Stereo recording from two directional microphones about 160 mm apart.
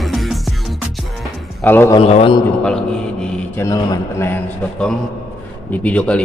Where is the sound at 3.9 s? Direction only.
15° left (ahead or behind).